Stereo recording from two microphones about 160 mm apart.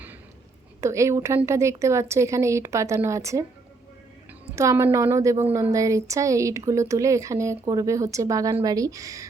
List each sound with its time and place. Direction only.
0.8 s a woman's voice: 20° right (ahead or behind)
4.5 s a woman's voice: 20° right (ahead or behind)